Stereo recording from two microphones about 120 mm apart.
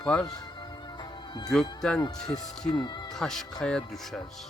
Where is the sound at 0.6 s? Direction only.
35° left (ahead or behind).